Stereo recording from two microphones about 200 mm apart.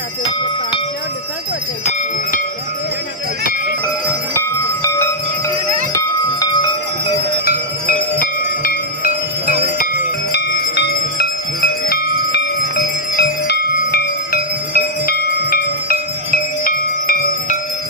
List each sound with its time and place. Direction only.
4.8 s a sound: 10° left (ahead or behind)
5.9 s bell: 20° left (ahead or behind)
7.9 s music: 45° left (ahead or behind)
10.3 s jingle bell: 55° left (ahead or behind)
13.1 s music: 50° left (ahead or behind)